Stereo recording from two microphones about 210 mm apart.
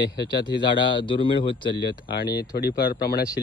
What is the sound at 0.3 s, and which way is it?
Speech, 20° left (ahead or behind).